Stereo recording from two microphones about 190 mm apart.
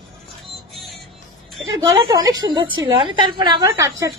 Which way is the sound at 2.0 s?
20° right (ahead or behind).